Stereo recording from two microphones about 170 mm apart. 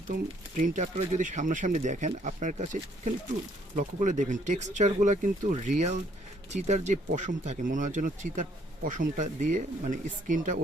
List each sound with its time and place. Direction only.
0.1 s speech: 50° right (ahead or behind)